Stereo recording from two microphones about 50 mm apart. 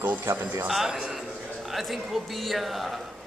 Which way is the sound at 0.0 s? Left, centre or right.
Right.